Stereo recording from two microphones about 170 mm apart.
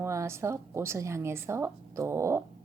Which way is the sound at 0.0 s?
15° right (ahead or behind).